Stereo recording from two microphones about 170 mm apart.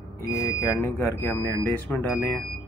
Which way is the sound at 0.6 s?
15° left (ahead or behind).